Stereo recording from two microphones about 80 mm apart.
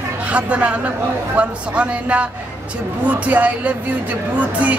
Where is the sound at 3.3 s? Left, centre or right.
Centre.